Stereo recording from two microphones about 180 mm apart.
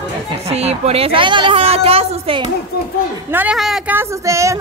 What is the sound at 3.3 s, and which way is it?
A woman's voice, 10° right (ahead or behind).